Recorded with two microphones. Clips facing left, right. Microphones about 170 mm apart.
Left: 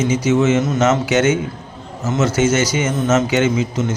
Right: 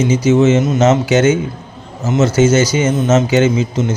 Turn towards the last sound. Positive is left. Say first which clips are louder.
# right 4 dB
turn(degrees=-30)  # may be behind; listen again after turning